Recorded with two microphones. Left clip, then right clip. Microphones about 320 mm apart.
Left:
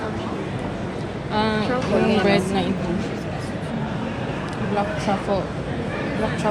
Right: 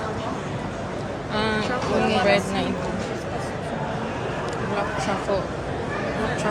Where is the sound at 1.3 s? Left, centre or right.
Centre.